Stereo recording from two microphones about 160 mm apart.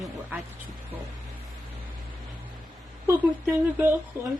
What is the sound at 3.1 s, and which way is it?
Speech, 15° right (ahead or behind).